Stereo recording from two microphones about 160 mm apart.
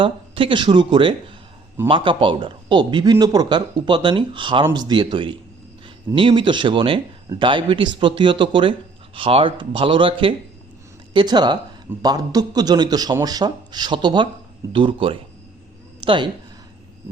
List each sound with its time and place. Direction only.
0.0 s speech: 35° right (ahead or behind)